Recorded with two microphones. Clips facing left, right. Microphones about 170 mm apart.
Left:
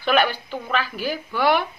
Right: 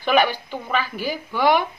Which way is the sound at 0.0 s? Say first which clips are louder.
Right 1 dB; 15° right (ahead or behind).